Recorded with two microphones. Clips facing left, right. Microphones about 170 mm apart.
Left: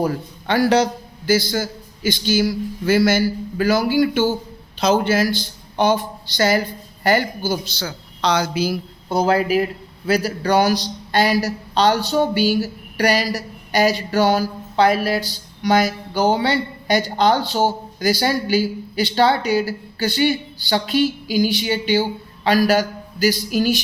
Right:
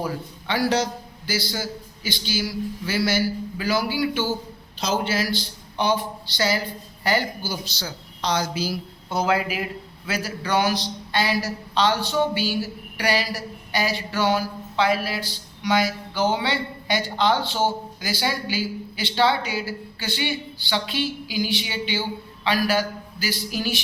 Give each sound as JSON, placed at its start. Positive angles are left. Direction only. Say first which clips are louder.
{"t": 0.0, "sound": "speech", "louder": "left 7 dB", "side_deg": 50}
{"t": 9.0, "sound": "a man's voice", "louder": "left 5 dB", "side_deg": 35}